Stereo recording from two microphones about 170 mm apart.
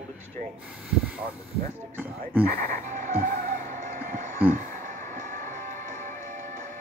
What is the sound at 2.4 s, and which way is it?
Speech, 55° right (ahead or behind).